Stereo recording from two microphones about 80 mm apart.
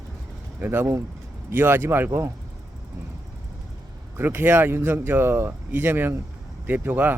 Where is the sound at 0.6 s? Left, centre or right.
Right.